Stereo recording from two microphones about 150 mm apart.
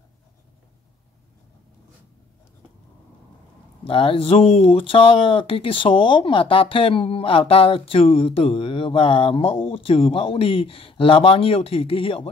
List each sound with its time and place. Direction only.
3.8 s speech: 40° left (ahead or behind)